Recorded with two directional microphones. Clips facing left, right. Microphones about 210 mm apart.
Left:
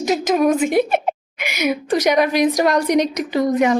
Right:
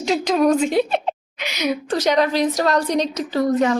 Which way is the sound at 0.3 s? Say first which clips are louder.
Even; 5° left (ahead or behind).